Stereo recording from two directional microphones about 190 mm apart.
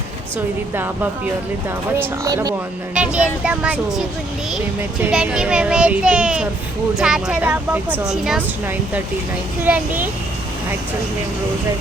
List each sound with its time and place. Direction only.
2.0 s speech: 20° right (ahead or behind)
2.9 s speech: 5° right (ahead or behind)
5.1 s speech: 5° right (ahead or behind)
9.6 s speech: 10° right (ahead or behind)